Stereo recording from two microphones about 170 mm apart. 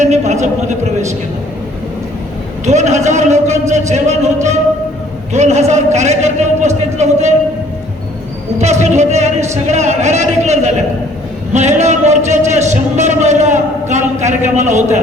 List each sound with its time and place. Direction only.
0.0 s a sound: 40° right (ahead or behind)
2.6 s speech: 40° right (ahead or behind)
5.3 s speech: 40° right (ahead or behind)
8.5 s speech: 40° right (ahead or behind)